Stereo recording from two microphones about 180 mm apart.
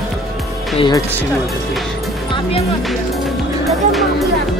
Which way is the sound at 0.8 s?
25° left (ahead or behind).